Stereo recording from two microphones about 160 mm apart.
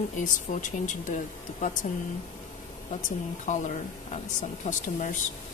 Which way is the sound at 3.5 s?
50° left (ahead or behind).